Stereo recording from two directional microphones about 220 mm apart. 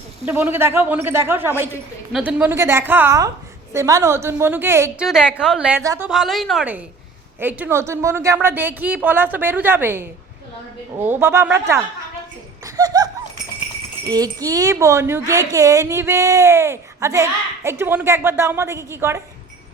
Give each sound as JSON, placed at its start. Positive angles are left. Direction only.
{"t": 0.3, "sound": "a woman's voice", "side_deg": -10}
{"t": 6.1, "sound": "a woman's voice", "side_deg": 0}
{"t": 12.6, "sound": "laughter", "side_deg": -15}
{"t": 14.1, "sound": "speech", "side_deg": -15}